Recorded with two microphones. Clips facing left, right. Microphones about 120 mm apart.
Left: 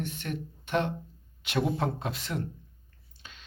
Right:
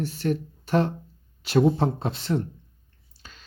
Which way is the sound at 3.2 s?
40° right (ahead or behind).